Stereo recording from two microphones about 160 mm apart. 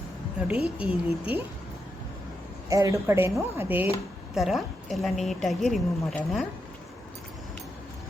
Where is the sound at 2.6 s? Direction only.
20° right (ahead or behind).